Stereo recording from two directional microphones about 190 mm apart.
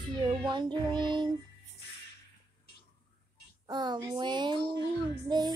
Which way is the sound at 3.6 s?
20° right (ahead or behind).